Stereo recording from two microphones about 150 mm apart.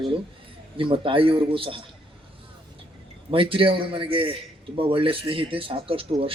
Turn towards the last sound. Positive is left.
turn(degrees=-40)  # may be behind; listen again after turning